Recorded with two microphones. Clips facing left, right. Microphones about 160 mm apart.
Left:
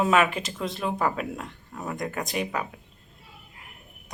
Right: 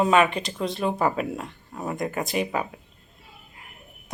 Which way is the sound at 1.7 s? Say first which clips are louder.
Right 3 dB; 15° right (ahead or behind).